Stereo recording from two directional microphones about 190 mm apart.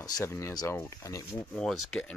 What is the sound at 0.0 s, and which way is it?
Speech, 15° left (ahead or behind).